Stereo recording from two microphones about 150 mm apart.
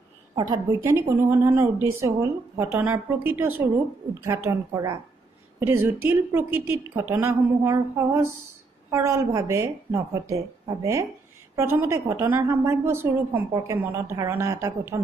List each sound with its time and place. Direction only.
0.7 s a woman's voice: 15° right (ahead or behind)